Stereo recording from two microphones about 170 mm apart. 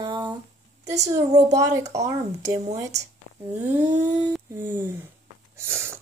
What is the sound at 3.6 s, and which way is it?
Humming, 45° right (ahead or behind).